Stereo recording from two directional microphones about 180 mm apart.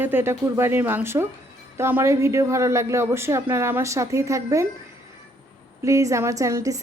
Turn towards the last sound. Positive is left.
turn(degrees=-15)  # may be behind; listen again after turning